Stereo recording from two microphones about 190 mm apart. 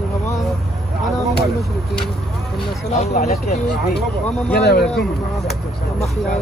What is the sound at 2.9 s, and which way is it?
Speech, 35° left (ahead or behind).